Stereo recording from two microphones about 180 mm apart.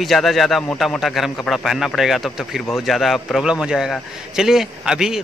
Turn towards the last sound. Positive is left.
turn(degrees=-5)  # may be behind; listen again after turning